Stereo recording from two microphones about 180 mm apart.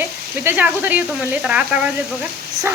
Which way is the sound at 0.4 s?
10° right (ahead or behind).